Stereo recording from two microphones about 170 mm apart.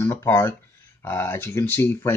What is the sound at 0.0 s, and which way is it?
Speech, 15° left (ahead or behind).